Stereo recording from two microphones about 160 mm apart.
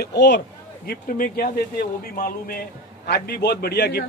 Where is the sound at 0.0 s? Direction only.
90° left.